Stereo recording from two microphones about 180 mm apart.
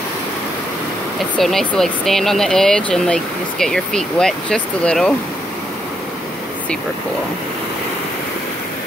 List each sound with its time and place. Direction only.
1.4 s speech: centre (ahead or behind)